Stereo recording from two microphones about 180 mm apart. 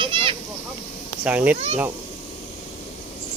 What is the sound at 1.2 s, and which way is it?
Cricket, 5° right (ahead or behind).